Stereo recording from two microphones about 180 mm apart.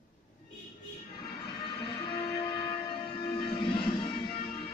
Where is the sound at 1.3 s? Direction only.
25° left (ahead or behind).